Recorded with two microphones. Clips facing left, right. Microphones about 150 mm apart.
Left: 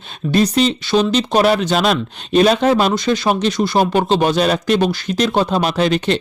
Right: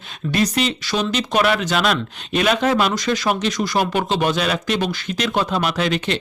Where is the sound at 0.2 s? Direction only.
30° left (ahead or behind).